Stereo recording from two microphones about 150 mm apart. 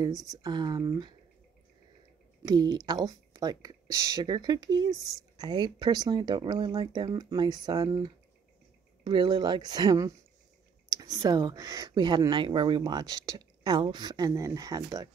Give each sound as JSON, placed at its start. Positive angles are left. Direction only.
{"t": 0.0, "sound": "speech", "side_deg": -25}
{"t": 2.4, "sound": "speech", "side_deg": -30}